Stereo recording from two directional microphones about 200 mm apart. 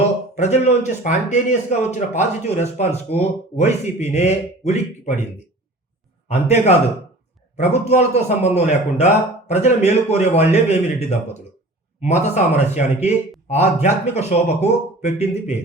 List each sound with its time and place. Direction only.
0.3 s speech: 35° left (ahead or behind)
6.2 s speech: 35° left (ahead or behind)
11.9 s speech: 35° left (ahead or behind)